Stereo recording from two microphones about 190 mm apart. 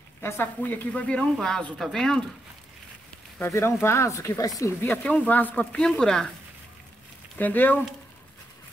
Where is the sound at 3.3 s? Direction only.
10° left (ahead or behind).